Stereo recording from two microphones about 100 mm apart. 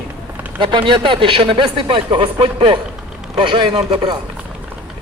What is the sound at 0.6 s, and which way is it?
A man's voice, 55° right (ahead or behind).